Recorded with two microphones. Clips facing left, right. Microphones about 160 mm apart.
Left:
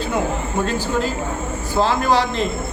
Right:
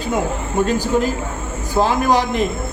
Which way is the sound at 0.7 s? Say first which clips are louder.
Right 3 dB; 15° right (ahead or behind).